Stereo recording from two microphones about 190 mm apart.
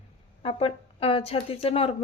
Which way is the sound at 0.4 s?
30° left (ahead or behind).